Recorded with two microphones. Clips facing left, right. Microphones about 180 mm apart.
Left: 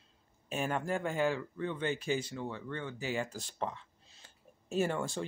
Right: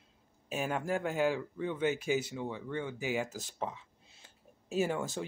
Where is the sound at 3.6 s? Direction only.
10° right (ahead or behind).